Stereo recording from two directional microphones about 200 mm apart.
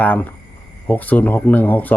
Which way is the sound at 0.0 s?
10° left (ahead or behind).